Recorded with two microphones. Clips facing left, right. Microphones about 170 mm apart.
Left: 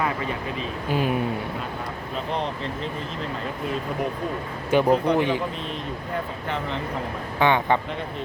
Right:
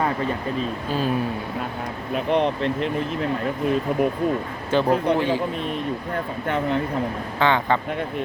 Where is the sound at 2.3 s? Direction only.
65° right (ahead or behind).